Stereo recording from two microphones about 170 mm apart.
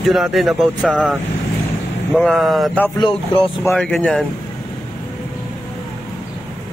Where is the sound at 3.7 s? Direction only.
5° left (ahead or behind).